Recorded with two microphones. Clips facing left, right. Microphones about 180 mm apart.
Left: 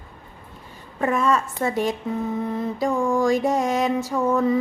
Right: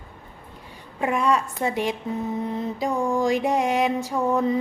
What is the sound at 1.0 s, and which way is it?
Music, 15° right (ahead or behind).